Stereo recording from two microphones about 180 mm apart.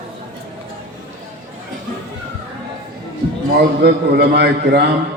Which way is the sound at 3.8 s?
65° right (ahead or behind).